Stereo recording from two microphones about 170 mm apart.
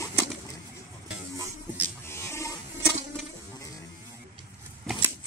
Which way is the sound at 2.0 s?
15° left (ahead or behind).